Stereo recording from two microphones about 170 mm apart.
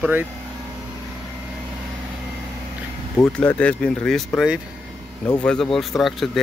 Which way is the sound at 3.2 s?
5° left (ahead or behind).